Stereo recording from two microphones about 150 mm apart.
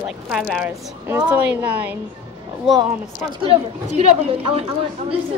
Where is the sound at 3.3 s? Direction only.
40° right (ahead or behind).